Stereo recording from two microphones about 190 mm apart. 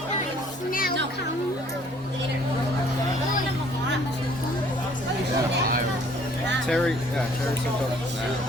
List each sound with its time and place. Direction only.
0.7 s music: 50° left (ahead or behind)
6.7 s speech: centre (ahead or behind)